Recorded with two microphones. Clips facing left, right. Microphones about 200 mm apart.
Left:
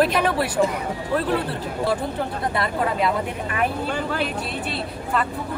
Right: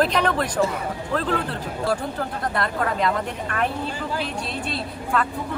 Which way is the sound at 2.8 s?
5° left (ahead or behind).